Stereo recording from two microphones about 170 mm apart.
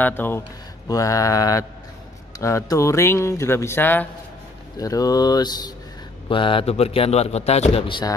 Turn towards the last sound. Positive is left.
turn(degrees=35)  # may be behind; listen again after turning